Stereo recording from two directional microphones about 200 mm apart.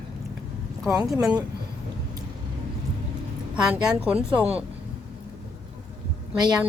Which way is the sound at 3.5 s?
5° right (ahead or behind).